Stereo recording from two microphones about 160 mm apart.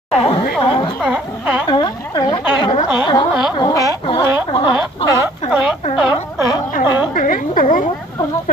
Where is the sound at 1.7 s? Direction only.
25° left (ahead or behind).